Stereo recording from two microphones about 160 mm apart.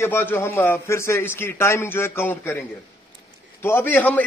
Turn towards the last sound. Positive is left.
turn(degrees=10)  # may be behind; listen again after turning